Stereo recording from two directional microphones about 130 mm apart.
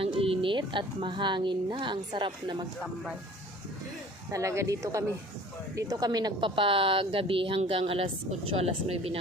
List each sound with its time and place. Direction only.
0.0 s speech: 45° right (ahead or behind)
4.3 s a woman's voice: 25° right (ahead or behind); by 9.1 s 50° right (ahead or behind)